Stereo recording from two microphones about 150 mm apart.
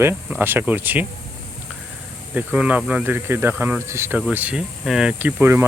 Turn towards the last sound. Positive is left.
turn(degrees=-15)  # may be behind; listen again after turning